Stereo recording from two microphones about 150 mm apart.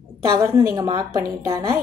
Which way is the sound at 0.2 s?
25° right (ahead or behind).